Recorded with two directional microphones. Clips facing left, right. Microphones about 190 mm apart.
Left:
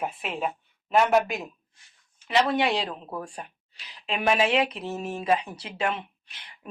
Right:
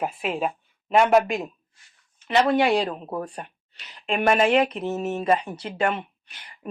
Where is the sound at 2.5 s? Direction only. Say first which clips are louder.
Right 5 dB; centre (ahead or behind).